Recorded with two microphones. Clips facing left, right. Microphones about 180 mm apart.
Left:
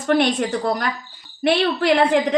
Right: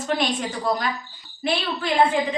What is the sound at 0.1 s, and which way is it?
Speech, 60° left (ahead or behind).